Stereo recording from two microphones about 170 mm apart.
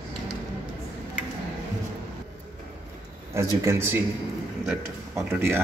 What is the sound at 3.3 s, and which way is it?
Speech, 15° right (ahead or behind).